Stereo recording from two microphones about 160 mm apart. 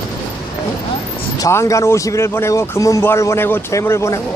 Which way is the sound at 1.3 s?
20° left (ahead or behind).